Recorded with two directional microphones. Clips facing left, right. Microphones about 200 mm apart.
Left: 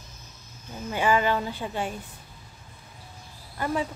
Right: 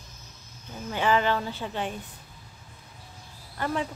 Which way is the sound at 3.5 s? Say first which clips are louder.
Left 1 dB; 10° left (ahead or behind).